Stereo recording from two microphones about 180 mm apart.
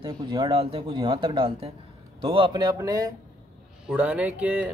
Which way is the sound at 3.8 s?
5° right (ahead or behind).